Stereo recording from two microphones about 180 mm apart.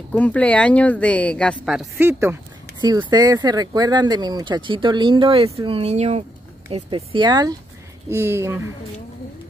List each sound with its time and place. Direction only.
0.1 s speech: 10° left (ahead or behind)
2.0 s speech: 15° right (ahead or behind)